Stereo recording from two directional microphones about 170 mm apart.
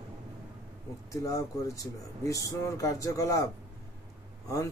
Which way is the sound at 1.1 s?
20° left (ahead or behind).